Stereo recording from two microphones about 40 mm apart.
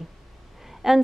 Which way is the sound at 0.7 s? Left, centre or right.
Centre.